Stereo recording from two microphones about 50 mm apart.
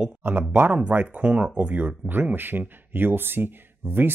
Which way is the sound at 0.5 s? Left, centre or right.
Right.